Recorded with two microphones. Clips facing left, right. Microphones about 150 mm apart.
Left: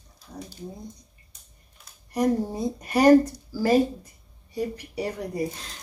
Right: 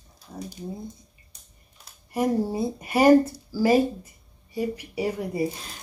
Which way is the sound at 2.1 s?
5° right (ahead or behind).